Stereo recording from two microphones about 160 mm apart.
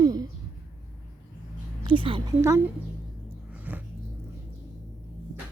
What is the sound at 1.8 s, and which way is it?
Speech, 30° right (ahead or behind).